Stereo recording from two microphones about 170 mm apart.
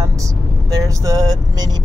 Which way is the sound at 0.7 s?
20° right (ahead or behind).